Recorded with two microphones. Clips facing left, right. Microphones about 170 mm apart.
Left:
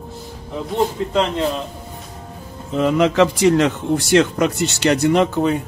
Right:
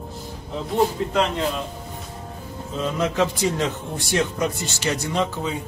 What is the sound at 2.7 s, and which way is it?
A man's voice, 75° left (ahead or behind).